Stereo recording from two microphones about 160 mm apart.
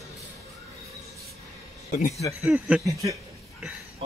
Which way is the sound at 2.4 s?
5° right (ahead or behind).